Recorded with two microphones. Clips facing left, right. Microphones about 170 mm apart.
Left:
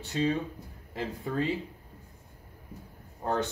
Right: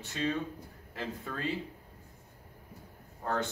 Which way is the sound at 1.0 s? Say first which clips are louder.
Left 7 dB; 20° left (ahead or behind).